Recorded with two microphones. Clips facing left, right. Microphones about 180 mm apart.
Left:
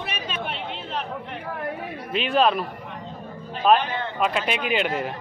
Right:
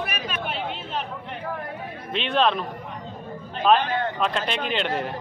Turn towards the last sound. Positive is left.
turn(degrees=5)  # may be behind; listen again after turning